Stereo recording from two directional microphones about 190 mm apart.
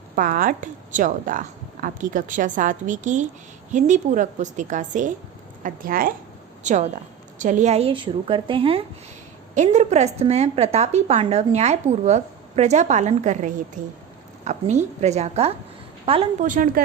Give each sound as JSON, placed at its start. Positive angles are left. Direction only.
{"t": 0.2, "sound": "a woman's voice", "side_deg": -45}
{"t": 16.5, "sound": "a woman's voice", "side_deg": -45}